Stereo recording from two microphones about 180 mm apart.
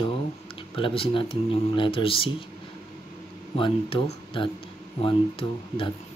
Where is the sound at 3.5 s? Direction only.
30° left (ahead or behind).